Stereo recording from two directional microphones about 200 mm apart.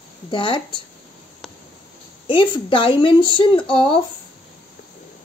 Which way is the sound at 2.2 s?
25° left (ahead or behind).